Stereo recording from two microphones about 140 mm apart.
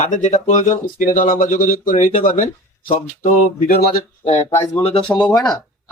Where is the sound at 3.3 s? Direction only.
80° left.